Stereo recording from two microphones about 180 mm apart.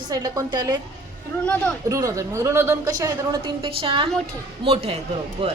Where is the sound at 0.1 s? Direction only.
20° right (ahead or behind).